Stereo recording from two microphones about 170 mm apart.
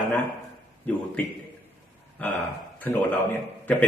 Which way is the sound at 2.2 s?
10° left (ahead or behind).